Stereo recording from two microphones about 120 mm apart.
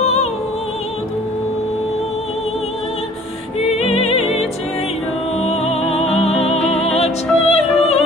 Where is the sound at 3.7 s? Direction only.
60° left (ahead or behind).